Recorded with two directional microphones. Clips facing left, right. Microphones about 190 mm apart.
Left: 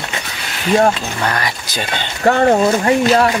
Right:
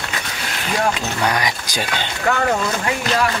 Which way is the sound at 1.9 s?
35° left (ahead or behind).